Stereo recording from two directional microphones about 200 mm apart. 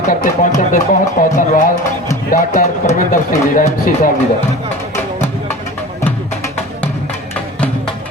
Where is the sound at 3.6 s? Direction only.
40° left (ahead or behind).